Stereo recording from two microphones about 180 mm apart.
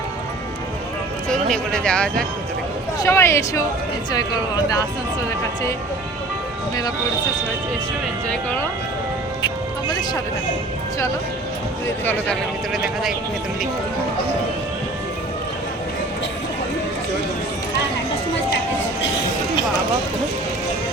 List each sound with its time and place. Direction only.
1.3 s speech: 5° left (ahead or behind)
8.3 s speech: 10° left (ahead or behind)
12.0 s speech: 5° left (ahead or behind)